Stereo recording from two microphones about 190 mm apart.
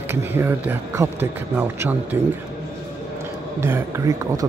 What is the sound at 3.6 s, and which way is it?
Speech, 15° right (ahead or behind).